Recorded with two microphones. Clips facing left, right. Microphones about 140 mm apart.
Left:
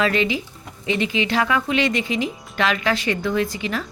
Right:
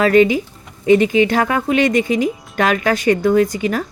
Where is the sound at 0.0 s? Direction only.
45° right (ahead or behind).